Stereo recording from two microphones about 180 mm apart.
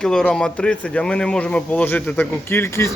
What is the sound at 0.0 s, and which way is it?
Speech, 5° left (ahead or behind).